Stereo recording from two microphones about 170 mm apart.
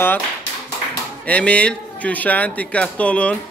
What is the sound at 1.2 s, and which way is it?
Speech, 5° left (ahead or behind).